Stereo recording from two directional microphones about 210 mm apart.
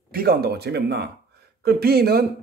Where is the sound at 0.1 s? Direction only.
45° right (ahead or behind).